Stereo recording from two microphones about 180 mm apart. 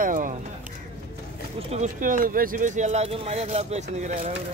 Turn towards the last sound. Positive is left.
turn(degrees=-40)  # may be behind; listen again after turning